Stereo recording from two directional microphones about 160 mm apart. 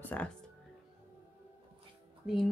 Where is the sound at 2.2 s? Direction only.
Centre (ahead or behind).